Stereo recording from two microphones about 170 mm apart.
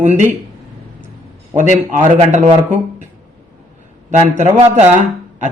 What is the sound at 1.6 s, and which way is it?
Speech, 45° right (ahead or behind).